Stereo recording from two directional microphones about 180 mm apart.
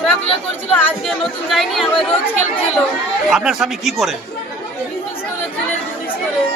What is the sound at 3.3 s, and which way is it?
Speech, centre (ahead or behind).